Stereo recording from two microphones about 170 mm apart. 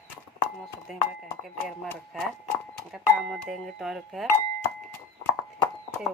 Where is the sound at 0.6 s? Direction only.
Centre (ahead or behind).